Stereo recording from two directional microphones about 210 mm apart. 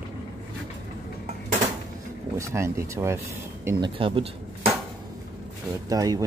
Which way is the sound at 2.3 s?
15° right (ahead or behind).